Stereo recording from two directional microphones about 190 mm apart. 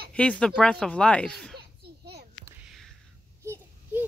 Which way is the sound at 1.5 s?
60° right (ahead or behind).